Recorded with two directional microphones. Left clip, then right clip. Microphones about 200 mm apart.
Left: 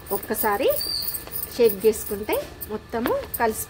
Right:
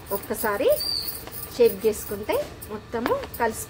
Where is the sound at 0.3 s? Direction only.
40° left (ahead or behind).